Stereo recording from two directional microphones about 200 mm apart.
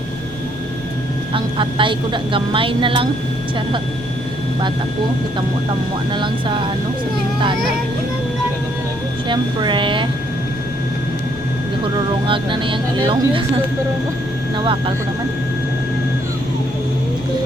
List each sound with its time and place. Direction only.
1.3 s a woman's voice: 25° right (ahead or behind)
6.1 s a woman's voice: 25° right (ahead or behind)
9.3 s a woman's voice: 25° right (ahead or behind)
11.9 s a woman's voice: 25° right (ahead or behind)
14.6 s a woman's voice: 25° right (ahead or behind)